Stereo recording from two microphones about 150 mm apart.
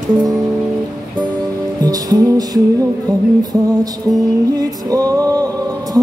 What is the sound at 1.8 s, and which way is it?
Music, 25° right (ahead or behind).